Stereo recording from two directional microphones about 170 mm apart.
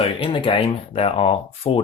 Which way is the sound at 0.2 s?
35° left (ahead or behind).